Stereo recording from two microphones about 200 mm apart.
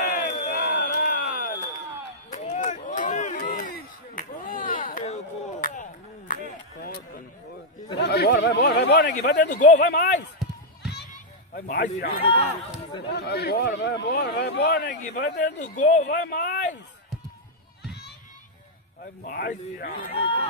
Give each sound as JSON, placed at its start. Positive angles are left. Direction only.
{"t": 0.0, "sound": "crowd", "side_deg": 40}
{"t": 2.3, "sound": "a sound", "side_deg": 35}
{"t": 8.0, "sound": "speech", "side_deg": 55}
{"t": 9.4, "sound": "speech", "side_deg": 40}
{"t": 9.8, "sound": "speech", "side_deg": 55}
{"t": 11.5, "sound": "a man's voice", "side_deg": 50}
{"t": 15.6, "sound": "speech", "side_deg": 40}
{"t": 16.2, "sound": "a sound", "side_deg": 45}
{"t": 19.2, "sound": "a man's voice", "side_deg": 50}
{"t": 20.1, "sound": "speech", "side_deg": 25}